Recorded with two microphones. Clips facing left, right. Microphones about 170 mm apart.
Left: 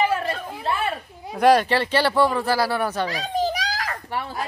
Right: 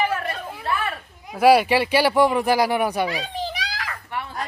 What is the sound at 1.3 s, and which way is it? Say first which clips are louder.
Speech: right 1 dB; 10° right (ahead or behind).